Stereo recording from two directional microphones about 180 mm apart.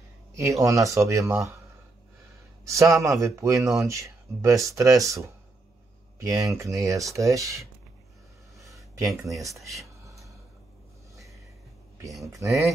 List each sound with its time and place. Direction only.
0.4 s speech: 20° right (ahead or behind)
2.6 s speech: 15° right (ahead or behind)
9.4 s speech: 15° right (ahead or behind)
10.0 s a sound: 15° right (ahead or behind)
12.3 s speech: 20° right (ahead or behind)